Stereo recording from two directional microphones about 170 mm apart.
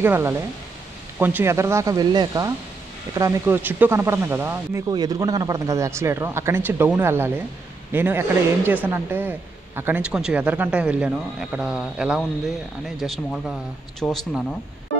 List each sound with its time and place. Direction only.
0.0 s speech: 15° right (ahead or behind)